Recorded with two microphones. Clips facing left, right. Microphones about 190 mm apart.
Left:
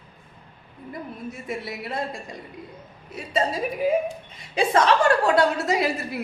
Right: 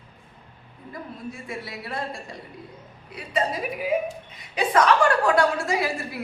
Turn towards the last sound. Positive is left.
turn(degrees=20)  # may be behind; listen again after turning